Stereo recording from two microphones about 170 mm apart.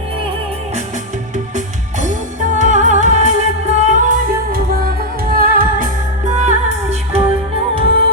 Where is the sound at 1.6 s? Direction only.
45° right (ahead or behind).